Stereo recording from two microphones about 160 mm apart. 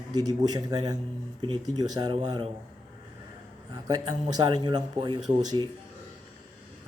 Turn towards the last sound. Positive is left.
turn(degrees=-25)  # may be behind; listen again after turning